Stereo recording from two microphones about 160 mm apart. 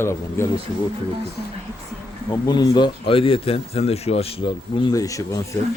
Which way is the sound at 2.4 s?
25° left (ahead or behind).